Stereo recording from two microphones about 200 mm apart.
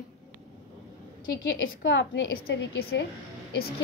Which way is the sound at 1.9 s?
60° left (ahead or behind).